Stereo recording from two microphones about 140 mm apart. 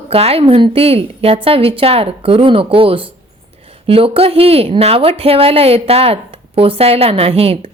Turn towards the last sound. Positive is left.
turn(degrees=-45)  # may be behind; listen again after turning